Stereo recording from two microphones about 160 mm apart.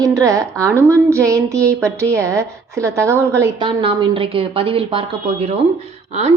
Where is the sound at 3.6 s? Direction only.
30° right (ahead or behind).